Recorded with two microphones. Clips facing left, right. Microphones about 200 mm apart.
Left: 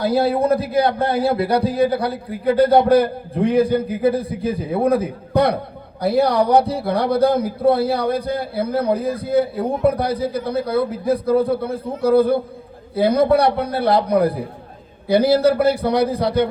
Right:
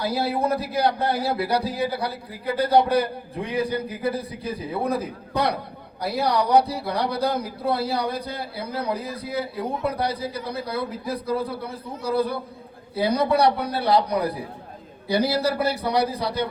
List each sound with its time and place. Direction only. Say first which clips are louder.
0.0 s a man's voice: left 7 dB; 55° left (ahead or behind)